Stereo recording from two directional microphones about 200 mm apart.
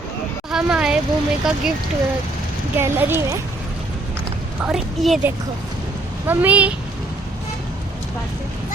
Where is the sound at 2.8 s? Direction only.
10° right (ahead or behind).